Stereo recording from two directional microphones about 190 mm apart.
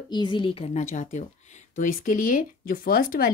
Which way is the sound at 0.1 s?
25° left (ahead or behind).